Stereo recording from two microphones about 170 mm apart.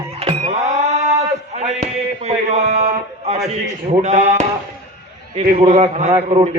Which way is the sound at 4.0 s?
40° right (ahead or behind).